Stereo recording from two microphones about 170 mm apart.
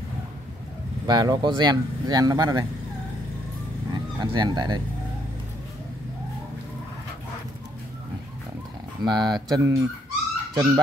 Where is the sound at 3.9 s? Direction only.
25° right (ahead or behind).